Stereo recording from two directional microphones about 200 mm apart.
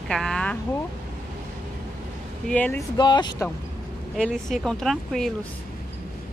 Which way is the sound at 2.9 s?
20° left (ahead or behind).